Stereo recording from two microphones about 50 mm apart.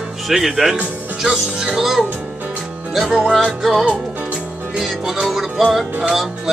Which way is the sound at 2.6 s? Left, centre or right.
Centre.